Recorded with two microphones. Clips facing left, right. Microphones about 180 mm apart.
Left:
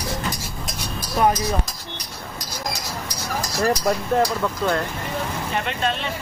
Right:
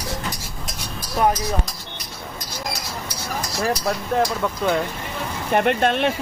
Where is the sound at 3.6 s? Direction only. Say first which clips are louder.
Left 3 dB; centre (ahead or behind).